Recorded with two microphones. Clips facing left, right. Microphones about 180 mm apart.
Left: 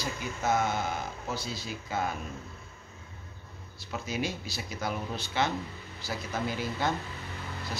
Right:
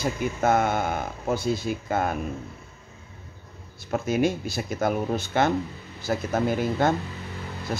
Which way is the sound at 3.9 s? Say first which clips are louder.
Right 10 dB; 50° right (ahead or behind).